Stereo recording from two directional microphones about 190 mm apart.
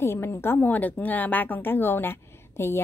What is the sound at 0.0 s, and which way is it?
A woman's voice, 15° left (ahead or behind).